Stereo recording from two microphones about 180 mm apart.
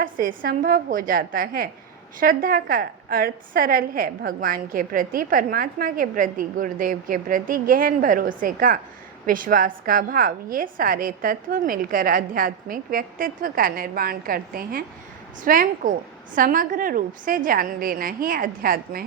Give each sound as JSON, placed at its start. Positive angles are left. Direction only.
{"t": 0.0, "sound": "a woman's voice", "side_deg": -50}